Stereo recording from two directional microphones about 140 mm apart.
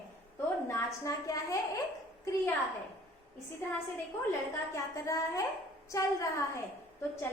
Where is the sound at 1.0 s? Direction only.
20° left (ahead or behind).